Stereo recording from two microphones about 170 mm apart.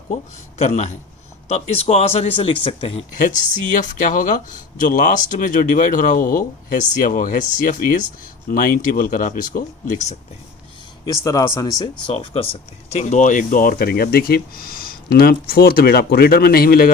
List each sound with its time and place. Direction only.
0.6 s speech: 40° left (ahead or behind)
3.2 s speech: 50° left (ahead or behind)
11.0 s speech: 20° left (ahead or behind)
12.0 s speech: 35° left (ahead or behind); by 16.9 s 60° left (ahead or behind)